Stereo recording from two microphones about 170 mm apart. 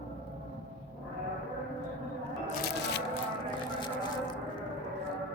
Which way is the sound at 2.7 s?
90° left.